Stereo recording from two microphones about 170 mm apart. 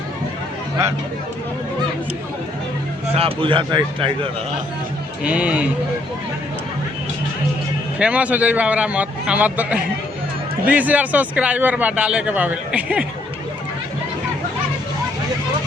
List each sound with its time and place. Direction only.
3.2 s a man's voice: 30° right (ahead or behind)
5.2 s a man's voice: 5° right (ahead or behind)
7.9 s a man's voice: 5° right (ahead or behind)